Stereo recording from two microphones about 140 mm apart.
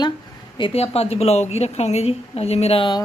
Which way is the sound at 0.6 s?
45° left (ahead or behind).